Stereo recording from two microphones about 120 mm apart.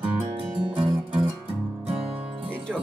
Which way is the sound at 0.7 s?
45° right (ahead or behind).